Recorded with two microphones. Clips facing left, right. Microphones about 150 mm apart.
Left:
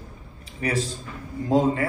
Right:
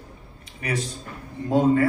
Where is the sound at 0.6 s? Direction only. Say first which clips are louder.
Left 2 dB; 30° left (ahead or behind).